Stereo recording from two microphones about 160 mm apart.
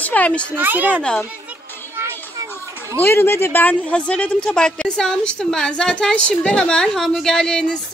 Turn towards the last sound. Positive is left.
turn(degrees=5)  # may be behind; listen again after turning